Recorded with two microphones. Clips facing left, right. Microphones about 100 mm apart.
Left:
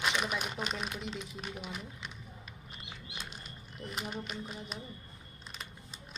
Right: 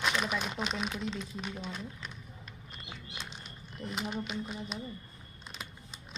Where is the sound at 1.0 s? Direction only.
15° left (ahead or behind).